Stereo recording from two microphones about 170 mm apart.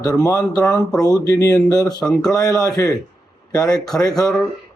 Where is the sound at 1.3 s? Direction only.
20° left (ahead or behind).